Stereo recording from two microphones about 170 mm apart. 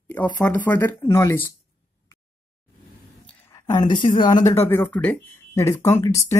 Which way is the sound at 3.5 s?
20° left (ahead or behind).